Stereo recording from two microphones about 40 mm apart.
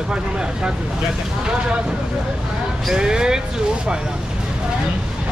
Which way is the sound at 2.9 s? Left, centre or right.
Centre.